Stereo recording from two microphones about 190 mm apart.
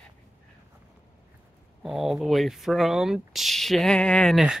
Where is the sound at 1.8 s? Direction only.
Centre (ahead or behind).